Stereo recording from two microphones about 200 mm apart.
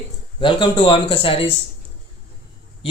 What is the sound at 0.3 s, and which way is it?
Speech, 25° left (ahead or behind).